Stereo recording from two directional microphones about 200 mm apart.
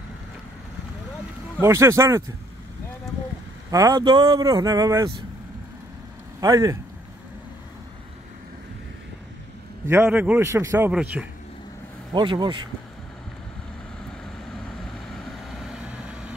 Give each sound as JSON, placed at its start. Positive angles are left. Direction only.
{"t": 1.6, "sound": "a man's voice", "side_deg": -15}
{"t": 3.7, "sound": "a man's voice", "side_deg": -20}
{"t": 6.4, "sound": "a man's voice", "side_deg": -15}
{"t": 9.8, "sound": "a man's voice", "side_deg": -10}
{"t": 12.1, "sound": "speech", "side_deg": -20}
{"t": 15.1, "sound": "vehicle", "side_deg": 0}